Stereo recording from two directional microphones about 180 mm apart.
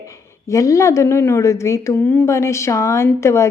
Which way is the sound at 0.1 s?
20° left (ahead or behind).